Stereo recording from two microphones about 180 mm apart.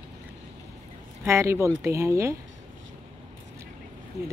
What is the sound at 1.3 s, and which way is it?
Speech, 15° right (ahead or behind).